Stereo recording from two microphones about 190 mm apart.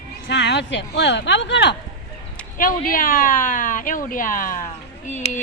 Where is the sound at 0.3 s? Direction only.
65° left (ahead or behind).